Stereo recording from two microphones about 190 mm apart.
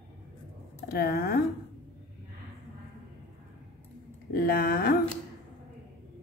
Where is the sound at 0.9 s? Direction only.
55° left (ahead or behind).